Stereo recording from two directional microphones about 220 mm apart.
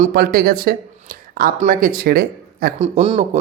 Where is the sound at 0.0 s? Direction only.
40° right (ahead or behind).